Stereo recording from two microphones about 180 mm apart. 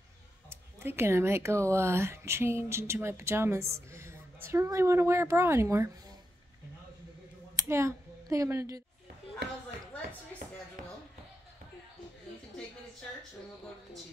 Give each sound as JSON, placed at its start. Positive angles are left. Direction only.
{"t": 0.5, "sound": "speech", "side_deg": -15}
{"t": 7.5, "sound": "speech", "side_deg": -15}